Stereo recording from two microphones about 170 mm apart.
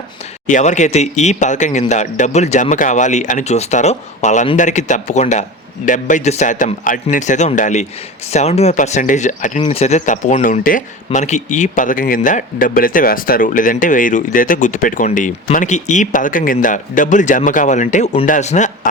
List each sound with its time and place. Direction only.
0.4 s speech: 45° left (ahead or behind)